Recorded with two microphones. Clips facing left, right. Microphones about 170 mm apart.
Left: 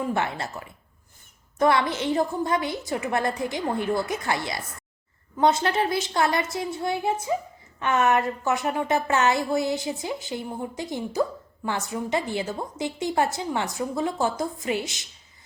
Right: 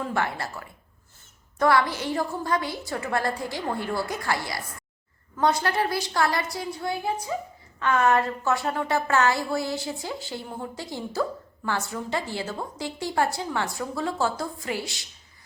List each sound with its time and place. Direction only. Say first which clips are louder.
0.0 s a woman's voice: left 1 dB; 20° left (ahead or behind)